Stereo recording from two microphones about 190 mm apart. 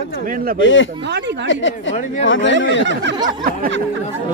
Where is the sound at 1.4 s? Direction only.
75° left (ahead or behind).